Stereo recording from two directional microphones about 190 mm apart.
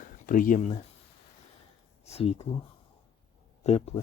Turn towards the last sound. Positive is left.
turn(degrees=35)  # may be behind; listen again after turning